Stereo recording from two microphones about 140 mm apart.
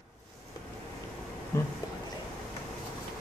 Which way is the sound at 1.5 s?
20° left (ahead or behind).